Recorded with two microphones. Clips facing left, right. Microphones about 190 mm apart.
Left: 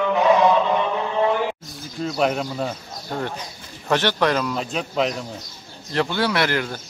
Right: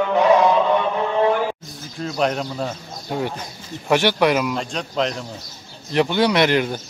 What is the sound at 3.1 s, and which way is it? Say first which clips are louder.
Speech: right 3 dB; 10° right (ahead or behind).